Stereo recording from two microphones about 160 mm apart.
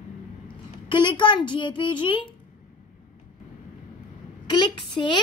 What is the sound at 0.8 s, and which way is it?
A child's voice, 30° left (ahead or behind).